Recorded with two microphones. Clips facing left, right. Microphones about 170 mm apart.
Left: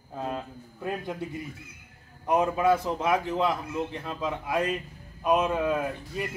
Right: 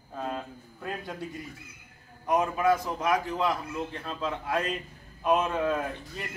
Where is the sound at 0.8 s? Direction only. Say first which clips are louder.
Left 4 dB; 20° left (ahead or behind).